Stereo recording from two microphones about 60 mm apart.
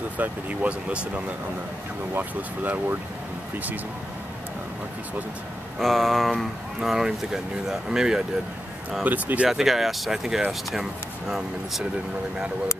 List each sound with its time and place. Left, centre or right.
0.2 s speech: right
2.1 s speech: right
5.8 s speech: centre
6.3 s speech: centre
9.0 s speech: right
9.5 s speech: centre